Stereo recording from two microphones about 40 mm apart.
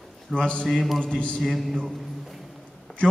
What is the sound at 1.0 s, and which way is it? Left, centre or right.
Speech, left.